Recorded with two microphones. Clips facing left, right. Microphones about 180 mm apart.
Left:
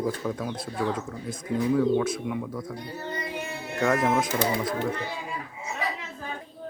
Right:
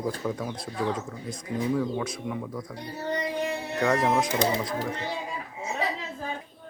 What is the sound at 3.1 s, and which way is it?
Music, 30° right (ahead or behind).